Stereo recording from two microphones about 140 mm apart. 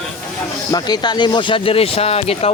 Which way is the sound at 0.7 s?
30° left (ahead or behind).